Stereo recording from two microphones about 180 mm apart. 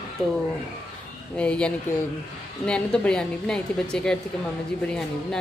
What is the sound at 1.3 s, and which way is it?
Speech, 5° left (ahead or behind).